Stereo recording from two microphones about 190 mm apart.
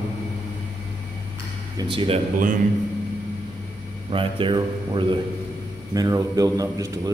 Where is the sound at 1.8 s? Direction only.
25° right (ahead or behind).